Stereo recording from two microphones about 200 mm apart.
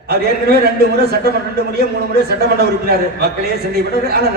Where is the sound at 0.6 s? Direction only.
55° right (ahead or behind).